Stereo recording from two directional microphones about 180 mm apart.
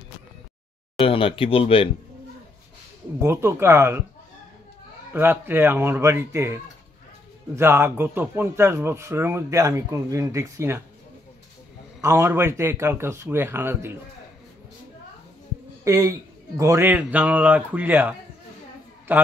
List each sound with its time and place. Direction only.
0.9 s speech: 30° left (ahead or behind)
3.2 s speech: 15° right (ahead or behind)
5.1 s speech: 10° right (ahead or behind)
12.0 s speech: 15° right (ahead or behind)
15.8 s speech: 15° right (ahead or behind)